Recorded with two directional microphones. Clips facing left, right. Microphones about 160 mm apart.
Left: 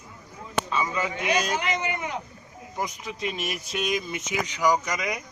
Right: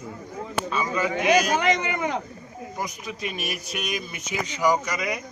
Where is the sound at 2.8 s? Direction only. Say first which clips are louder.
Left 2 dB; 20° left (ahead or behind).